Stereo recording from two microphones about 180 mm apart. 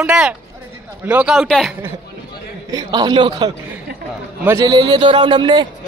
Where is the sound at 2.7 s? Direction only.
20° right (ahead or behind).